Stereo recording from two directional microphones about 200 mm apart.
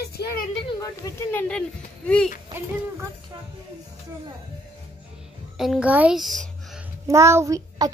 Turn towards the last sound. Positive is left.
turn(degrees=-15)  # may be behind; listen again after turning